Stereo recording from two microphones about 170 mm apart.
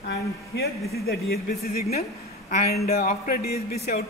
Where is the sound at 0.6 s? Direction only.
65° left (ahead or behind).